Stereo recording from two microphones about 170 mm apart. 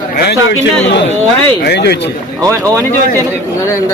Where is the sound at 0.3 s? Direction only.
90° left.